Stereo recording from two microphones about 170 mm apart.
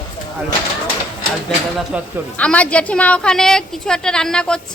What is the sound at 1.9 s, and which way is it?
Speech, 5° right (ahead or behind).